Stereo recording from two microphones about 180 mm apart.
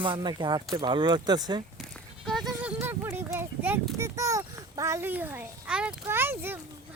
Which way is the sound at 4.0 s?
15° right (ahead or behind).